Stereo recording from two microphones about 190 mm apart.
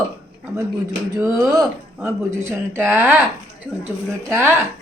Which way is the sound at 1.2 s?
Centre (ahead or behind).